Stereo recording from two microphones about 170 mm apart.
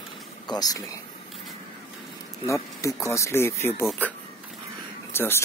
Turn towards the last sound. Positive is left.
turn(degrees=15)  # may be behind; listen again after turning